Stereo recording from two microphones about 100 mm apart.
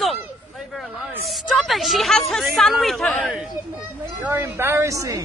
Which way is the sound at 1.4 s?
Centre (ahead or behind).